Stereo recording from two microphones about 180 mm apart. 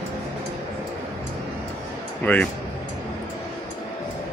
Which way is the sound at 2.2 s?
10° left (ahead or behind).